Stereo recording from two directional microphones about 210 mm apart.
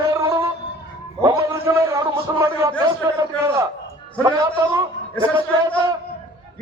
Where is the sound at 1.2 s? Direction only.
15° right (ahead or behind).